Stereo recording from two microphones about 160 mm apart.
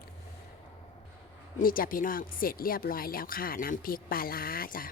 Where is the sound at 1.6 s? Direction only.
60° left (ahead or behind).